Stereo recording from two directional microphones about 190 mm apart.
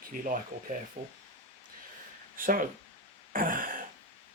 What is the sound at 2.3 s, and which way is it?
Speech, 45° right (ahead or behind).